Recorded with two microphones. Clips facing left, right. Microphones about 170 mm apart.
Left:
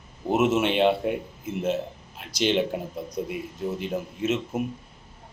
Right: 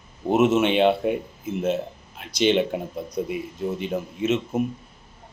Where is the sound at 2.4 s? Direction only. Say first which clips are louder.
Right 3 dB; 55° right (ahead or behind).